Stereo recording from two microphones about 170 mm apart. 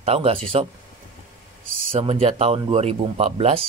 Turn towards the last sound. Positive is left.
turn(degrees=-35)  # may be behind; listen again after turning